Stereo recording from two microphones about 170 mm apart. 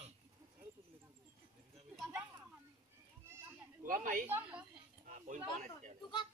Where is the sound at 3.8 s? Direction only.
50° right (ahead or behind).